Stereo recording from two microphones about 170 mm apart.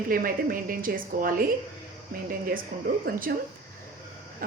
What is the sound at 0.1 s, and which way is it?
A woman's voice, 60° right (ahead or behind).